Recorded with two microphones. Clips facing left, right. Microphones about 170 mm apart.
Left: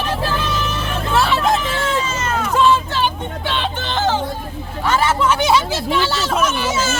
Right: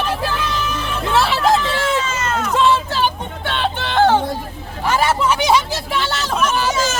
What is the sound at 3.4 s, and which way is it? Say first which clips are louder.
Music: right 2 dB; 55° right (ahead or behind).